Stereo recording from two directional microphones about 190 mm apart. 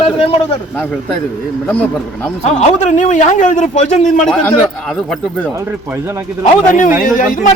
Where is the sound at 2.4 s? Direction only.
35° left (ahead or behind).